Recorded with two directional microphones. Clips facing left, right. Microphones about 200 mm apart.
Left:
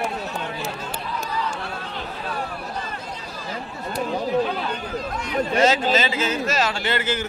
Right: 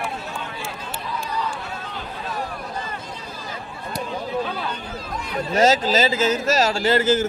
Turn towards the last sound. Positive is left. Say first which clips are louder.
# right 6 dB
turn(degrees=-40)  # may be behind; listen again after turning